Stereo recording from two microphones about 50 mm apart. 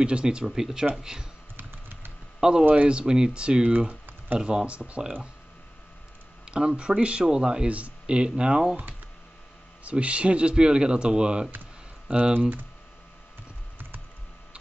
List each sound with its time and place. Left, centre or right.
0.0 s speech: centre
1.6 s typing: right
2.7 s speech: right
6.4 s speech: centre
9.8 s speech: right
12.4 s speech: right